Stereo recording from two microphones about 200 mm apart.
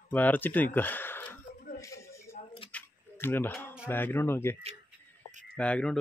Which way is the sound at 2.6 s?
10° left (ahead or behind).